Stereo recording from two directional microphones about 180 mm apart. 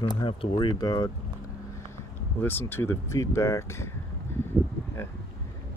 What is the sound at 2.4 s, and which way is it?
Speech, 10° left (ahead or behind).